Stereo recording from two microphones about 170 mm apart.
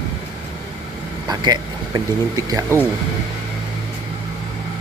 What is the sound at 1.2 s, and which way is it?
Speech, 25° right (ahead or behind).